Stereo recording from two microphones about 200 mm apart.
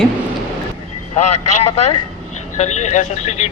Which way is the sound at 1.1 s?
35° left (ahead or behind).